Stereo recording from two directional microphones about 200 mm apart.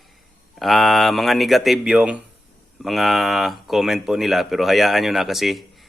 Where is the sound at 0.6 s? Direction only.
Centre (ahead or behind).